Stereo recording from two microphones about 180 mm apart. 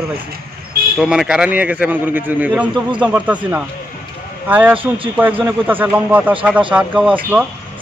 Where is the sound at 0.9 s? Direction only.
5° right (ahead or behind).